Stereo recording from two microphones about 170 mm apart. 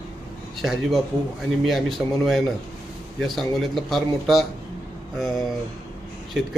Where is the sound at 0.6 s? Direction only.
Centre (ahead or behind).